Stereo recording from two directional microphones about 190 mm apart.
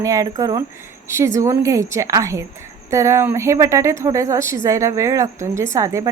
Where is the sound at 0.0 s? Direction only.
15° right (ahead or behind).